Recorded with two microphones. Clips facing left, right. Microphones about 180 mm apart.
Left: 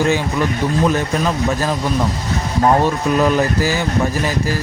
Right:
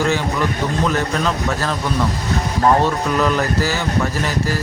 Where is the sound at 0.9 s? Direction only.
20° left (ahead or behind).